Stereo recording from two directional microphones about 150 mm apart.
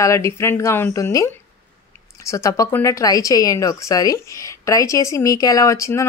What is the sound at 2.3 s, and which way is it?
A woman's voice, 20° left (ahead or behind).